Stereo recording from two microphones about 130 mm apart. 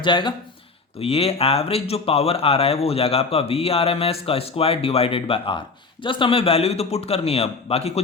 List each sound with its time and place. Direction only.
0.0 s speech: 35° left (ahead or behind)
0.9 s speech: 50° left (ahead or behind)